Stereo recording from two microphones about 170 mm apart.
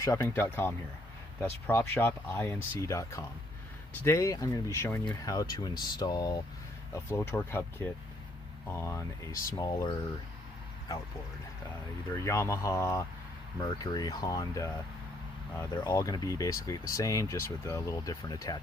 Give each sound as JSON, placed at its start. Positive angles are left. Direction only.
{"t": 0.0, "sound": "speech", "side_deg": 20}
{"t": 12.2, "sound": "speech", "side_deg": 15}